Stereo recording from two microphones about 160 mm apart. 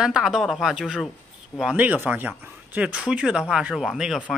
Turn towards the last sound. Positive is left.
turn(degrees=-5)  # may be behind; listen again after turning